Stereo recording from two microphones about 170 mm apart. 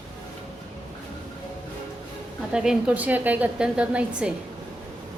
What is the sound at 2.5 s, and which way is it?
A woman's voice, 5° right (ahead or behind).